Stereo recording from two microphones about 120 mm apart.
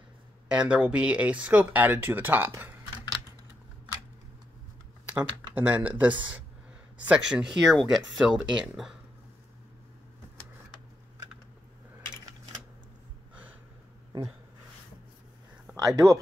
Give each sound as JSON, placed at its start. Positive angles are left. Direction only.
{"t": 0.5, "sound": "speech", "side_deg": -10}
{"t": 5.1, "sound": "speech", "side_deg": -10}
{"t": 15.7, "sound": "speech", "side_deg": -30}